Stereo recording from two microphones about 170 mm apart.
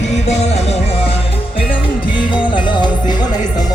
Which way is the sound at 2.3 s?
25° left (ahead or behind).